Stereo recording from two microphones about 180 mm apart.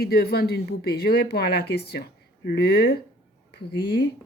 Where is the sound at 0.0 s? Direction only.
60° left (ahead or behind).